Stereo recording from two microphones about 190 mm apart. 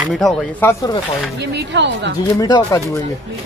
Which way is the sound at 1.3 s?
65° right (ahead or behind).